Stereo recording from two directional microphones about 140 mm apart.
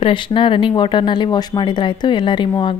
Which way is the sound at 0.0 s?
35° left (ahead or behind).